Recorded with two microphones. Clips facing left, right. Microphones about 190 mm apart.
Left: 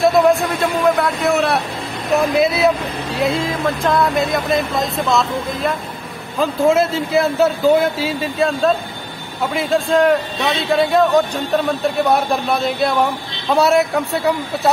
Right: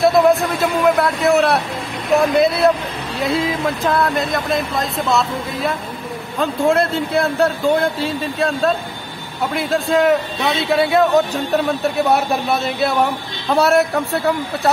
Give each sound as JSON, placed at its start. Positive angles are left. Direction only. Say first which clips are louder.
{"t": 0.0, "sound": "a man's voice", "louder": "even", "side_deg": 0}